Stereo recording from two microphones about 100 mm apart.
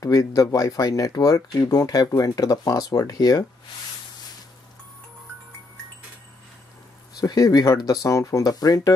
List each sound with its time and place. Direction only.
0.0 s speech: 35° left (ahead or behind)
7.2 s speech: 40° left (ahead or behind)